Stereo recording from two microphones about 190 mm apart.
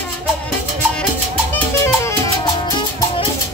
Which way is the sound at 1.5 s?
15° left (ahead or behind).